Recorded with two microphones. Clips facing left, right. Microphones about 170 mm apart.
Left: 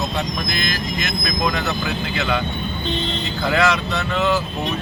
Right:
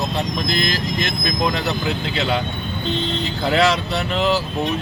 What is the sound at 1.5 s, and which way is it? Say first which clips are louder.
Speech: right 1 dB; 30° right (ahead or behind).